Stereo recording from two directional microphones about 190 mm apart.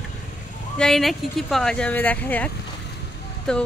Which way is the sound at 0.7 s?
Centre (ahead or behind).